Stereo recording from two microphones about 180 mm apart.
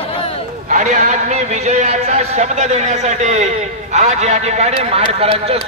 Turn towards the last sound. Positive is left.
turn(degrees=-35)  # may be behind; listen again after turning